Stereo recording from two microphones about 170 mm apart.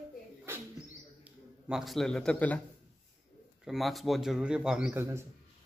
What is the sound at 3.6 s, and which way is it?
A man's voice, centre (ahead or behind).